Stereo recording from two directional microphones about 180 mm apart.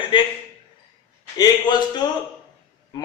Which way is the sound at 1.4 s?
25° left (ahead or behind).